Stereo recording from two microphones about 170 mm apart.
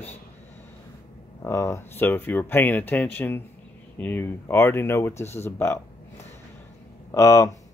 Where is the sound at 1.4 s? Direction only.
15° left (ahead or behind).